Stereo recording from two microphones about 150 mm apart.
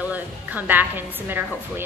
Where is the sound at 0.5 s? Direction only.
10° right (ahead or behind).